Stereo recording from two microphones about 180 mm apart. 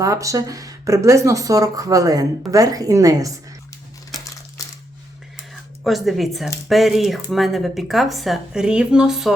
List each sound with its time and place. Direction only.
0.0 s speech: 20° right (ahead or behind)
5.8 s speech: centre (ahead or behind)